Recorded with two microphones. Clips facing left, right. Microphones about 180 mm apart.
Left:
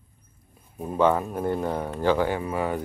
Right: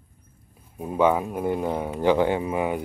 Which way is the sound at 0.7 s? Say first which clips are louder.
Right 1 dB; 10° right (ahead or behind).